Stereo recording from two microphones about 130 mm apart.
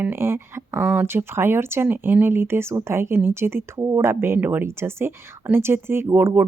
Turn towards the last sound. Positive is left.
turn(degrees=-20)  # may be behind; listen again after turning